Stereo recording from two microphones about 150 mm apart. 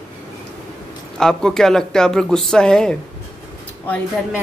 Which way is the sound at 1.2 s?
5° left (ahead or behind).